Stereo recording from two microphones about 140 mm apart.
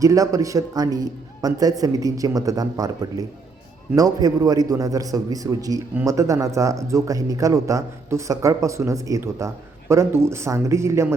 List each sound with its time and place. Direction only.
0.0 s speech: 25° right (ahead or behind)